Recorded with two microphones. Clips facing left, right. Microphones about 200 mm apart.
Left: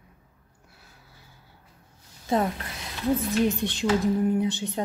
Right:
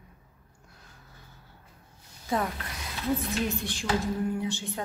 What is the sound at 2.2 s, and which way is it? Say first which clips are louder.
Speech: left 5 dB; 25° left (ahead or behind).